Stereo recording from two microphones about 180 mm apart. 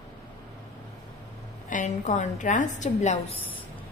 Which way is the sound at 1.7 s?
45° left (ahead or behind).